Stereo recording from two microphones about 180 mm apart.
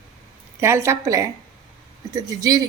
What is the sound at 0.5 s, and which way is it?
A woman's voice, 15° right (ahead or behind).